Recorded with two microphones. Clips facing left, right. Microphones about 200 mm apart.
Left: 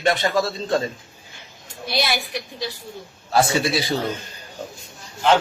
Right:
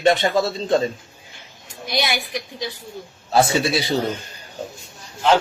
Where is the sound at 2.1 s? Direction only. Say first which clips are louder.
Even; 15° right (ahead or behind).